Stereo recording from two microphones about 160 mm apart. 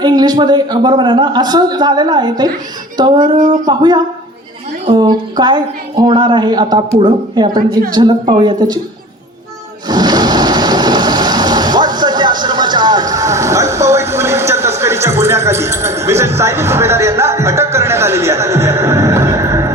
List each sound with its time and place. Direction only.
0.0 s a woman's voice: 25° right (ahead or behind)
3.3 s speech: 55° right (ahead or behind)
3.7 s a woman's voice: 25° right (ahead or behind)
9.9 s a sound: 25° right (ahead or behind)